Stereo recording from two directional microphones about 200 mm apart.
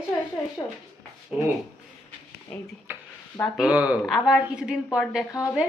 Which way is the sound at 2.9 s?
10° right (ahead or behind).